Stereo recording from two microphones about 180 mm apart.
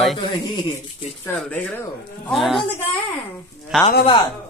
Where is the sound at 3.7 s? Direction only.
Centre (ahead or behind).